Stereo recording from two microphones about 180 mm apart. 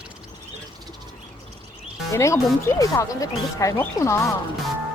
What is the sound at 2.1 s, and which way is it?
Speech, 15° left (ahead or behind).